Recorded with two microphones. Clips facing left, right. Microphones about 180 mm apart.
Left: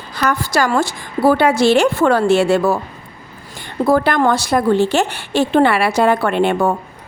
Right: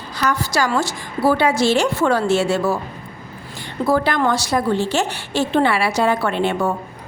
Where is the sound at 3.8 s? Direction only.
55° left (ahead or behind).